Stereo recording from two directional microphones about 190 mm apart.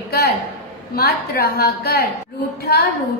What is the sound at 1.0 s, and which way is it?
A woman's voice, 55° left (ahead or behind).